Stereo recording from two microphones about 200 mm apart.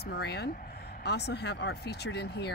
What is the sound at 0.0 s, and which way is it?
Speech, 55° left (ahead or behind).